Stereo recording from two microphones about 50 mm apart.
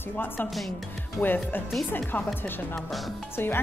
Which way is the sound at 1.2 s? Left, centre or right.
Centre.